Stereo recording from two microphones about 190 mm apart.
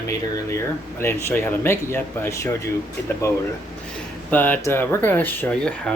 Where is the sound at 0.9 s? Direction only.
10° left (ahead or behind).